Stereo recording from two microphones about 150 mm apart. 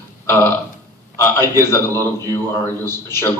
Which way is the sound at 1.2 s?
20° left (ahead or behind).